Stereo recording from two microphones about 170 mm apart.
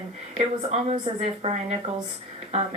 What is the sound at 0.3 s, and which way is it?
A woman's voice, 35° right (ahead or behind).